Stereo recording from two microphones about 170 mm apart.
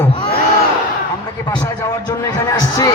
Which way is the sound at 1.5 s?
20° left (ahead or behind).